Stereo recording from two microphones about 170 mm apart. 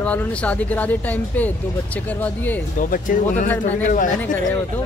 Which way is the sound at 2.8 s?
55° left (ahead or behind).